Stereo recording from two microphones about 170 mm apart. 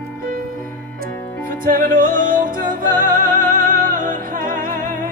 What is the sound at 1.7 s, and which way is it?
Music, 55° right (ahead or behind).